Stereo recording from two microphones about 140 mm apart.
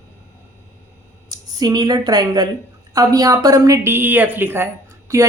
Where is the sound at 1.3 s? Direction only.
30° right (ahead or behind).